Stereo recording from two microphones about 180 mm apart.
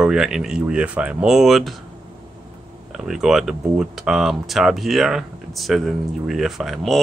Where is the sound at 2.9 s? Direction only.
Centre (ahead or behind).